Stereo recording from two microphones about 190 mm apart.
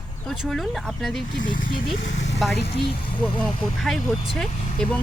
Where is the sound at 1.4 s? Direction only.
45° left (ahead or behind).